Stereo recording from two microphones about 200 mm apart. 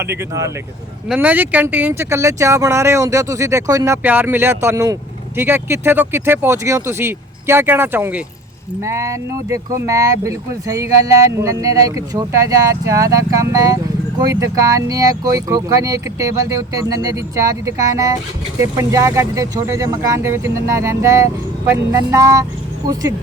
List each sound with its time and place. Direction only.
0.0 s speech: 15° right (ahead or behind)